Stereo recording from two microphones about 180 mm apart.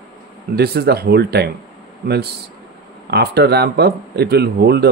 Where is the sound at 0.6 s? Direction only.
60° right (ahead or behind).